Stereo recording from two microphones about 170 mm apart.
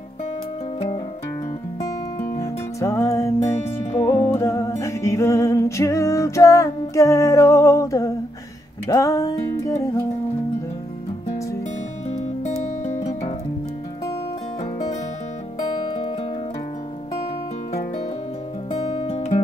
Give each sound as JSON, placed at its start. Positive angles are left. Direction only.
{"t": 2.3, "sound": "music", "side_deg": 20}
{"t": 14.6, "sound": "music", "side_deg": 45}
{"t": 15.8, "sound": "music", "side_deg": 30}
{"t": 18.8, "sound": "music", "side_deg": 35}